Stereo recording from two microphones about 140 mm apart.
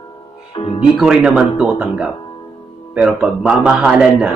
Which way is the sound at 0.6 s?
40° left (ahead or behind).